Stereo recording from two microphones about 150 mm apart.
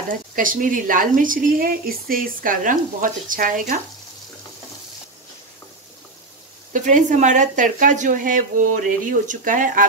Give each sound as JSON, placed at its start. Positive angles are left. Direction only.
{"t": 0.4, "sound": "speech", "side_deg": -65}
{"t": 6.7, "sound": "speech", "side_deg": -60}